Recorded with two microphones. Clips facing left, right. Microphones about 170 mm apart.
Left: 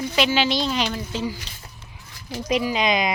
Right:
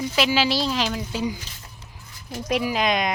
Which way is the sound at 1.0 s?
15° right (ahead or behind).